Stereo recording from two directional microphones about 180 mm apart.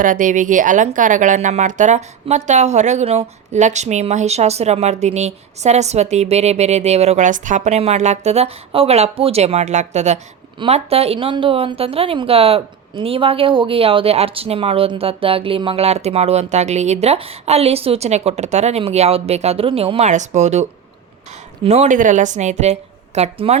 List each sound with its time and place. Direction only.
0.0 s speech: 50° right (ahead or behind)